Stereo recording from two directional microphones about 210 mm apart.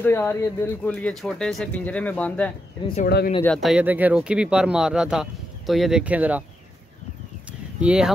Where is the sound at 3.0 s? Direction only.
45° left (ahead or behind).